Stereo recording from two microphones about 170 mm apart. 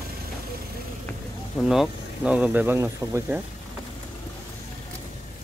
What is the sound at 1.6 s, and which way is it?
Speech, centre (ahead or behind).